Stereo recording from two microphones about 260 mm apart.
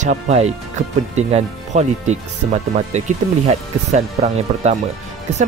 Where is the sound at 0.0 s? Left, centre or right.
Right.